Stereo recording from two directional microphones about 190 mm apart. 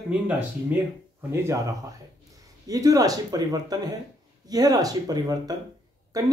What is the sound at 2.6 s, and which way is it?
Speech, 20° right (ahead or behind).